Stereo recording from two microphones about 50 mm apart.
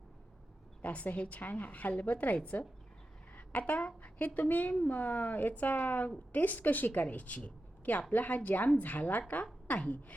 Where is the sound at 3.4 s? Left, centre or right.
Left.